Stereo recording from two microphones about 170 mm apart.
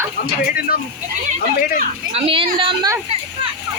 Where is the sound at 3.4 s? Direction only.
35° right (ahead or behind).